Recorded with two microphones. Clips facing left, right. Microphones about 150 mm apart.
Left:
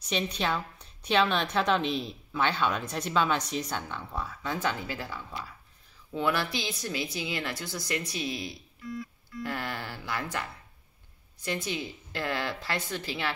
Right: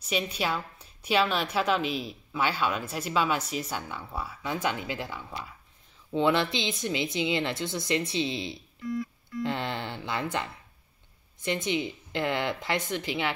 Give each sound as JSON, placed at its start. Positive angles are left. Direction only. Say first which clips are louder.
{"t": 0.0, "sound": "a woman's voice", "louder": "even", "side_deg": -5}